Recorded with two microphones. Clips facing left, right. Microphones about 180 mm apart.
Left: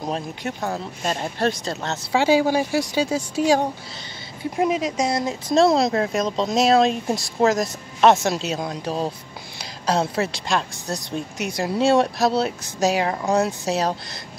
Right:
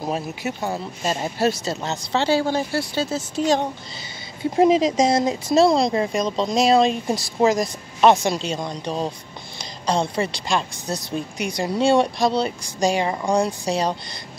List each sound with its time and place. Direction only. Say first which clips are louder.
0.0 s speech: right 1 dB; 5° right (ahead or behind)
2.1 s speech: left 3 dB; 15° left (ahead or behind)
4.6 s speech: right 6 dB; 25° right (ahead or behind)
4.8 s speech: right 5 dB; 90° right
5.1 s speech: right 4 dB; 20° right (ahead or behind)
5.5 s speech: even; centre (ahead or behind)